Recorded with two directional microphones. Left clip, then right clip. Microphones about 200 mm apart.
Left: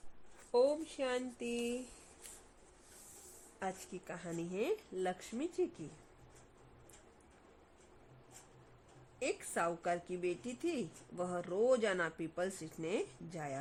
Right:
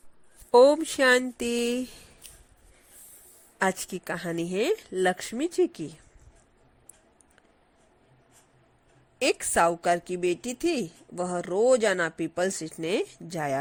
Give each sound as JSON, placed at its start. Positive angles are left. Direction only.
{"t": 0.5, "sound": "a woman's voice", "side_deg": -50}
{"t": 3.6, "sound": "a woman's voice", "side_deg": -40}
{"t": 9.1, "sound": "a woman's voice", "side_deg": -30}